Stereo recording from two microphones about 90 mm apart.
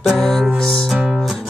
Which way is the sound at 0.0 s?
Centre (ahead or behind).